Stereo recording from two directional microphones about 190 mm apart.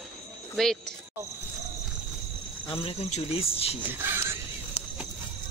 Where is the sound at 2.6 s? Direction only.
30° left (ahead or behind).